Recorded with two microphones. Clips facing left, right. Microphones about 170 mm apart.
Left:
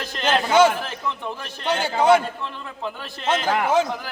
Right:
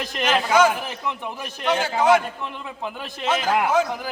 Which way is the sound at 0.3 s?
30° left (ahead or behind).